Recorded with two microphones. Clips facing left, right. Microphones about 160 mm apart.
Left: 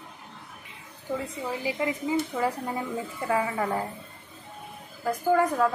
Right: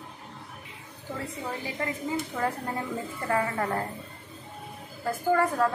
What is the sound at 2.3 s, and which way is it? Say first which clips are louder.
A woman's voice: left 2 dB; 10° left (ahead or behind).